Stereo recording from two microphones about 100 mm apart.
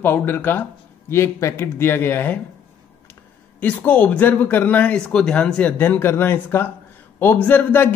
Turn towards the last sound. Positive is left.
turn(degrees=20)  # may be behind; listen again after turning